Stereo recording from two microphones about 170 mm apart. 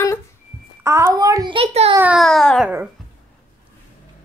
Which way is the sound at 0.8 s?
15° right (ahead or behind).